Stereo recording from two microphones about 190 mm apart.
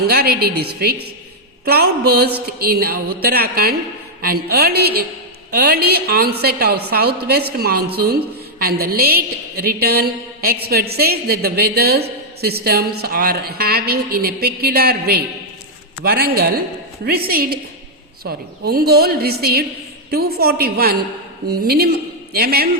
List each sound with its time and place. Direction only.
0.1 s a woman's voice: 55° right (ahead or behind)